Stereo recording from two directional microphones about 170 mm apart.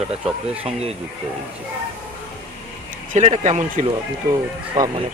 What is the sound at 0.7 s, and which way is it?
Speech, 35° right (ahead or behind).